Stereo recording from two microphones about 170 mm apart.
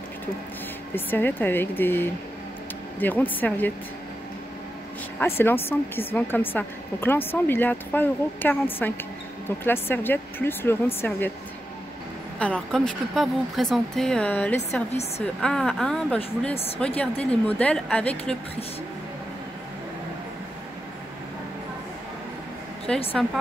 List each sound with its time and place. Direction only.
0.9 s a woman's voice: 10° left (ahead or behind)
5.2 s a woman's voice: 15° left (ahead or behind)
12.4 s speech: 5° left (ahead or behind)
14.9 s a woman's voice: 40° left (ahead or behind)
15.4 s speech: 5° left (ahead or behind)
16.5 s a woman's voice: 35° left (ahead or behind)
16.8 s a woman's voice: 10° left (ahead or behind)
22.9 s speech: 5° left (ahead or behind)